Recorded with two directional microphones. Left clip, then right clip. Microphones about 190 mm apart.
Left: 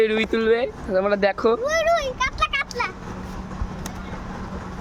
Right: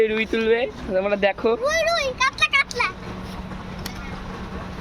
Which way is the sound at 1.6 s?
50° left (ahead or behind).